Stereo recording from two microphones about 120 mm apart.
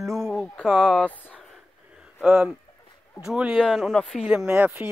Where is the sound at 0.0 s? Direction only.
25° right (ahead or behind).